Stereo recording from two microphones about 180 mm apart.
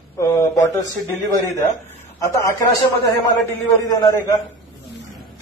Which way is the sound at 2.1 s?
20° left (ahead or behind).